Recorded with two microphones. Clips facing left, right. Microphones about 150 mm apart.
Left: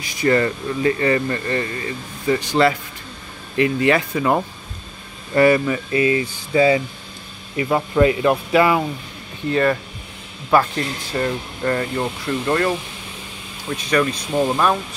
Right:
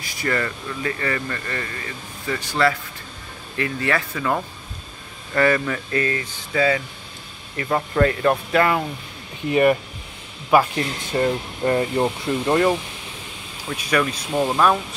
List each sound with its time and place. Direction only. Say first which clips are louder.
0.0 s speech: left 7 dB; 20° left (ahead or behind)
5.3 s speech: left 5 dB; 15° left (ahead or behind)
9.5 s speech: right 2 dB; 15° right (ahead or behind)
11.1 s speech: right 2 dB; 25° right (ahead or behind)
13.7 s speech: left 2 dB; 5° right (ahead or behind)